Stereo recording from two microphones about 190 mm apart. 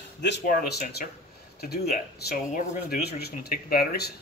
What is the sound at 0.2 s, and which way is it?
Speech, 60° left (ahead or behind).